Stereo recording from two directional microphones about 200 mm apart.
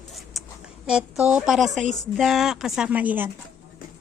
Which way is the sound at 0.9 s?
5° right (ahead or behind).